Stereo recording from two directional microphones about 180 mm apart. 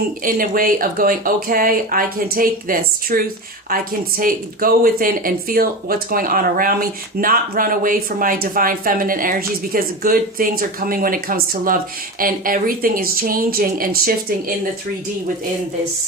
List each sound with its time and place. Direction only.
0.3 s speech: 50° right (ahead or behind)